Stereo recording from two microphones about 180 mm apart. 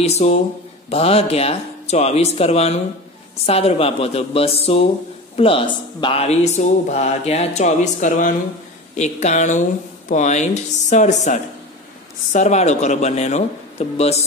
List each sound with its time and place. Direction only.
0.0 s speech: 35° left (ahead or behind)